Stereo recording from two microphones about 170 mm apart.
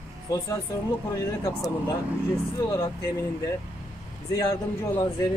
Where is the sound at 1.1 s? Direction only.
20° left (ahead or behind).